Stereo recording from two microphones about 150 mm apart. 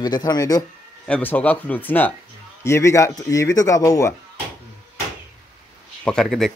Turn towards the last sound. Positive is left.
turn(degrees=5)  # may be behind; listen again after turning